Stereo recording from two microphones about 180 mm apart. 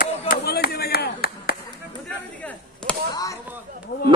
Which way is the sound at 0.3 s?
60° left (ahead or behind).